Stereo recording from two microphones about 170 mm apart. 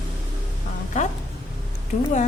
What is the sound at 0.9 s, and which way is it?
Speech, 45° left (ahead or behind).